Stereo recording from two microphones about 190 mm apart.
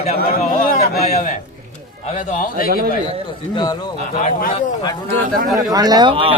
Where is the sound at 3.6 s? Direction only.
20° left (ahead or behind).